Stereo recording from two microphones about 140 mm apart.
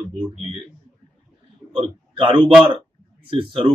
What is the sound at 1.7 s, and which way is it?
A man's voice, 35° right (ahead or behind).